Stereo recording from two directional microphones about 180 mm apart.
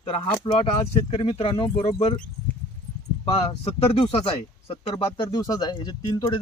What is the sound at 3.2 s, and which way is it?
Speech, 35° left (ahead or behind).